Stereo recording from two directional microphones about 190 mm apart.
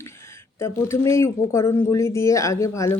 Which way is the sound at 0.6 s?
15° left (ahead or behind).